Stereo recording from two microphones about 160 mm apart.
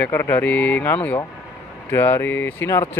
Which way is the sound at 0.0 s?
15° left (ahead or behind).